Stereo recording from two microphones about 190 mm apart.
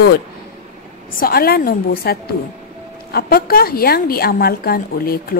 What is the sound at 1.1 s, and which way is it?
A woman's voice, 50° left (ahead or behind).